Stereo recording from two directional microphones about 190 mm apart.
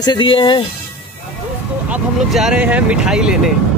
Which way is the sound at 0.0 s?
25° left (ahead or behind).